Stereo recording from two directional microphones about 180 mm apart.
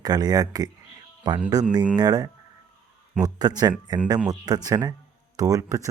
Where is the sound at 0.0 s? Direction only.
20° right (ahead or behind).